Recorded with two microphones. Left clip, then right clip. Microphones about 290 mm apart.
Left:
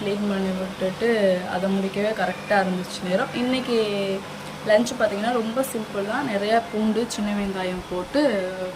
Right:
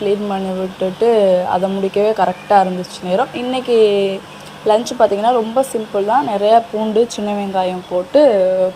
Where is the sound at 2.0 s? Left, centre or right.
Centre.